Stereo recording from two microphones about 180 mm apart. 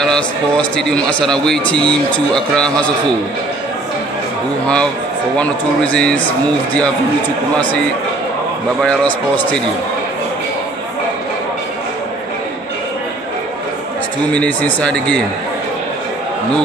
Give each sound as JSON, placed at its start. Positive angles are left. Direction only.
{"t": 0.0, "sound": "speech", "side_deg": 5}
{"t": 5.4, "sound": "speech", "side_deg": 5}
{"t": 8.8, "sound": "speech", "side_deg": 5}
{"t": 14.3, "sound": "speech", "side_deg": 5}